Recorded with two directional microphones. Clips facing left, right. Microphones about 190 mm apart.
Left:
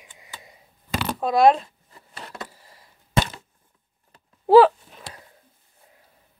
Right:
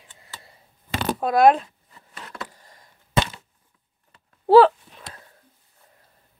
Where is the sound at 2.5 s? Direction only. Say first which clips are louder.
Even; 5° left (ahead or behind).